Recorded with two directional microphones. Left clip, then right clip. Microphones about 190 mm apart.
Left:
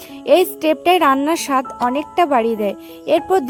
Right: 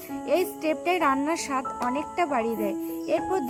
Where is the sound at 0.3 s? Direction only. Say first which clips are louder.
Left 11 dB; 50° left (ahead or behind).